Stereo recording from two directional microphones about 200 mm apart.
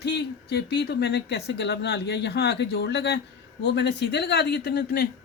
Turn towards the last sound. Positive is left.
turn(degrees=50)  # may be behind; listen again after turning